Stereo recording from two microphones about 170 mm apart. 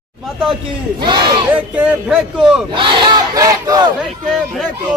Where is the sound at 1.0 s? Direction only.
25° right (ahead or behind).